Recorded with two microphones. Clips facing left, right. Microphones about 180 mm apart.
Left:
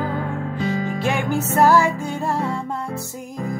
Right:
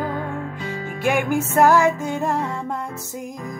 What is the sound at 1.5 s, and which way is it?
Music, 15° right (ahead or behind).